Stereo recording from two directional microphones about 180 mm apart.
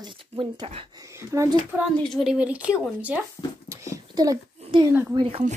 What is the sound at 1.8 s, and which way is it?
Speech, centre (ahead or behind).